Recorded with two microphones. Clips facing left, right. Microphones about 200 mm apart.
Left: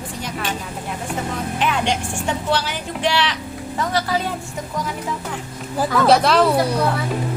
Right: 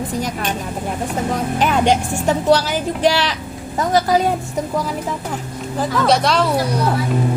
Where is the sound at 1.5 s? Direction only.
40° right (ahead or behind).